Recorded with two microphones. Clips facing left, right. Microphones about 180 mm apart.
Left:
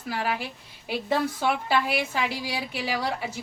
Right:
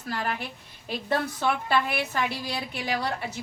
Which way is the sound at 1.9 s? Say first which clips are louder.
Left 1 dB; 10° left (ahead or behind).